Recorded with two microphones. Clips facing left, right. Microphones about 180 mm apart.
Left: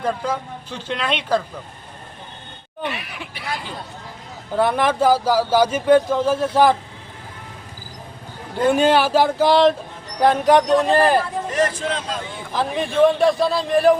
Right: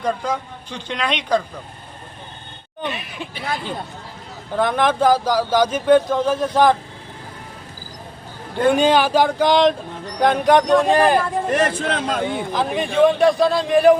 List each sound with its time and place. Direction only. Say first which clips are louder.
0.0 s a woman's voice: right 1 dB; 5° left (ahead or behind)
2.8 s speech: right 1 dB; 20° right (ahead or behind)
4.5 s speech: even; 5° left (ahead or behind)
8.6 s a woman's voice: right 1 dB; 5° left (ahead or behind)
11.2 s speech: right 2 dB; 60° right (ahead or behind)
12.5 s a woman's voice: even; centre (ahead or behind)